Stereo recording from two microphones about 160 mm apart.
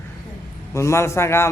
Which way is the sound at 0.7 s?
15° left (ahead or behind).